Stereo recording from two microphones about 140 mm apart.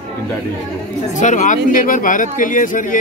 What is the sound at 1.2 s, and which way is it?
Speech, 60° left (ahead or behind).